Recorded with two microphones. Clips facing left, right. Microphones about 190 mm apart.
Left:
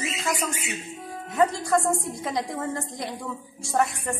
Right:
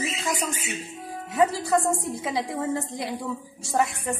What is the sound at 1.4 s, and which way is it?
A woman's voice, 5° right (ahead or behind).